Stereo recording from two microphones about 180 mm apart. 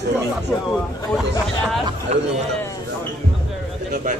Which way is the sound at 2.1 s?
35° right (ahead or behind).